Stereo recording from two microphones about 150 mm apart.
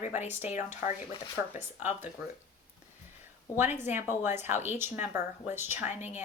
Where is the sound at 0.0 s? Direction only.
55° left (ahead or behind).